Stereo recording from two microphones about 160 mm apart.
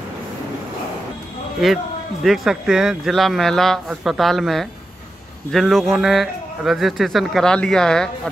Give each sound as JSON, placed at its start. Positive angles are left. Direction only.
{"t": 1.6, "sound": "speech", "side_deg": 0}